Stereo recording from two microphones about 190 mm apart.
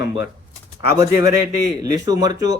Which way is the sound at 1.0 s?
15° right (ahead or behind).